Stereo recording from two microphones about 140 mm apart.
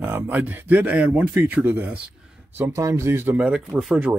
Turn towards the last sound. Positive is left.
turn(degrees=-5)  # may be behind; listen again after turning